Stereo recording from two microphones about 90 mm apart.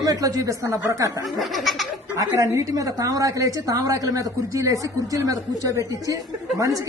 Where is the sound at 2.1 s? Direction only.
35° right (ahead or behind).